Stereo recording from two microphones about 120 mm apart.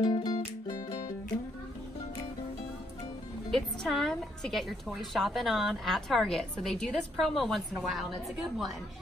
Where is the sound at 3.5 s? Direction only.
Centre (ahead or behind).